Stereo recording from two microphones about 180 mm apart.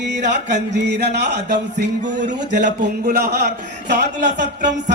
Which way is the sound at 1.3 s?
70° right (ahead or behind).